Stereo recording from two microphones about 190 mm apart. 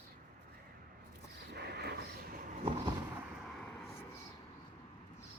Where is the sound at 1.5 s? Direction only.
60° right (ahead or behind).